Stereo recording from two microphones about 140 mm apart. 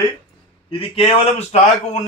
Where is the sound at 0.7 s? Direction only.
45° left (ahead or behind).